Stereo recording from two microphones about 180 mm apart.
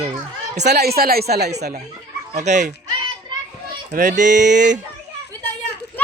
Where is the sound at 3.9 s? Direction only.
45° right (ahead or behind).